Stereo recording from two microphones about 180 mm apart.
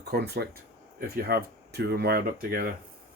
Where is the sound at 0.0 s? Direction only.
65° right (ahead or behind).